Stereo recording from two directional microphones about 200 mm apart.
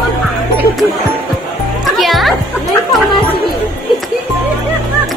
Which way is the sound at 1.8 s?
Centre (ahead or behind).